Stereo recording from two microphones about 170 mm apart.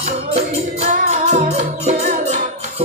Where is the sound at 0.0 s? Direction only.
40° right (ahead or behind).